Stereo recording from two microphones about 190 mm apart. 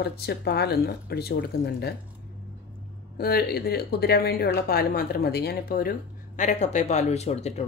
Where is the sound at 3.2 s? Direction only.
55° left (ahead or behind).